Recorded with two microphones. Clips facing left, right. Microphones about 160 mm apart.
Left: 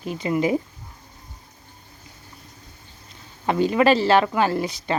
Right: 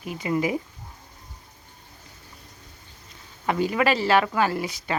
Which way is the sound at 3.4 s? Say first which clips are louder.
Left 4 dB; 25° left (ahead or behind).